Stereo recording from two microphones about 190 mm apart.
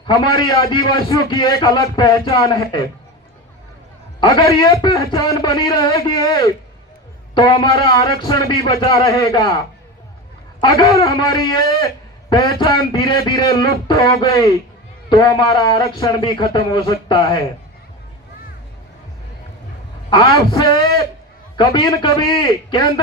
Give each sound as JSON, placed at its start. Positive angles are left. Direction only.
{"t": 0.1, "sound": "a man's voice", "side_deg": 20}
{"t": 4.2, "sound": "a man's voice", "side_deg": 20}
{"t": 10.6, "sound": "a man's voice", "side_deg": 20}
{"t": 20.1, "sound": "a man's voice", "side_deg": 20}